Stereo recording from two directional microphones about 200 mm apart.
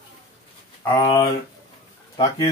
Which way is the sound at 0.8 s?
10° left (ahead or behind).